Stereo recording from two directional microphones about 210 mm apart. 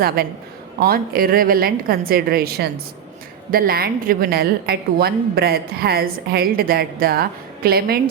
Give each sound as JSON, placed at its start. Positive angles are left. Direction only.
{"t": 0.2, "sound": "a woman's voice", "side_deg": -45}